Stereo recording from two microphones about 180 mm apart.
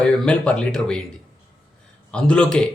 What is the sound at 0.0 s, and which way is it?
Speech, 5° left (ahead or behind).